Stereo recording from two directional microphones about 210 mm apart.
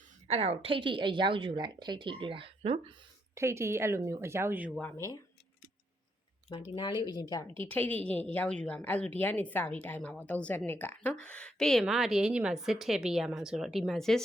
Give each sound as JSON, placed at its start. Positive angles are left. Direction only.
{"t": 0.3, "sound": "a woman's voice", "side_deg": -30}
{"t": 3.3, "sound": "speech", "side_deg": -15}
{"t": 6.7, "sound": "speech", "side_deg": 20}
{"t": 7.6, "sound": "a woman's voice", "side_deg": 5}